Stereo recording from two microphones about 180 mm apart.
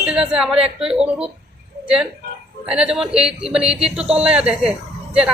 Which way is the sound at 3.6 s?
35° right (ahead or behind).